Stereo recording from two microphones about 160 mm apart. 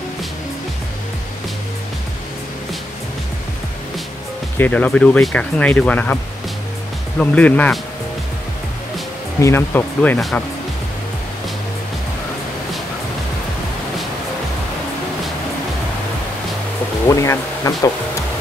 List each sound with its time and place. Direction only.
4.6 s speech: 10° left (ahead or behind)
7.2 s speech: 10° left (ahead or behind)
9.4 s speech: 15° left (ahead or behind)
17.1 s speech: 20° left (ahead or behind)